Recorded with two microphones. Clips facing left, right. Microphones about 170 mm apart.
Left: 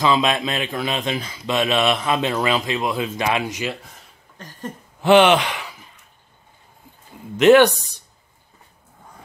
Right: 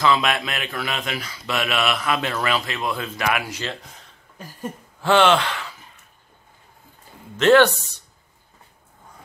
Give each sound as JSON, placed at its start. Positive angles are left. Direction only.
{"t": 0.0, "sound": "a man's voice", "side_deg": 20}
{"t": 4.4, "sound": "a sound", "side_deg": -5}
{"t": 5.0, "sound": "speech", "side_deg": 15}
{"t": 7.3, "sound": "speech", "side_deg": 15}